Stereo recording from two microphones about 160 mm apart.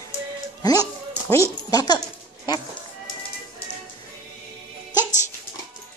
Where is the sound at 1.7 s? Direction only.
25° left (ahead or behind).